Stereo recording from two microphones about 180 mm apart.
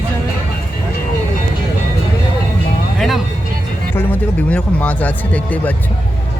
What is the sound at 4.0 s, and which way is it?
Speech, 10° left (ahead or behind).